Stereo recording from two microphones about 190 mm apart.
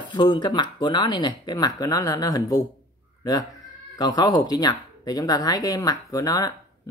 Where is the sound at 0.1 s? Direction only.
25° left (ahead or behind).